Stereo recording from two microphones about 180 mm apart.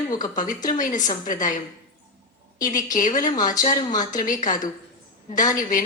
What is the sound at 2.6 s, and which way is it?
Speech, 45° left (ahead or behind).